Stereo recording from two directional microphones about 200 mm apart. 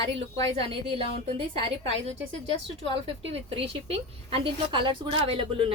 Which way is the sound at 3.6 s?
30° right (ahead or behind).